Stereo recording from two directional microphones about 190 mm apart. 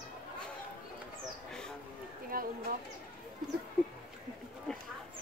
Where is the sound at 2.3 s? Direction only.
50° right (ahead or behind).